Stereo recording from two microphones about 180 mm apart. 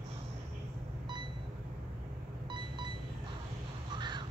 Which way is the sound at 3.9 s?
25° right (ahead or behind).